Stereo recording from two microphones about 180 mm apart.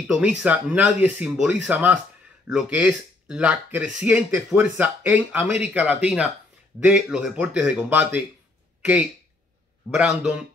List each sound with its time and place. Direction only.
0.1 s speech: 5° right (ahead or behind)
9.9 s speech: 5° right (ahead or behind)